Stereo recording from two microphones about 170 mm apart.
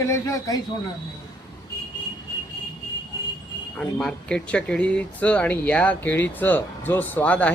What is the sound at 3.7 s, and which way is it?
Speech, 5° left (ahead or behind).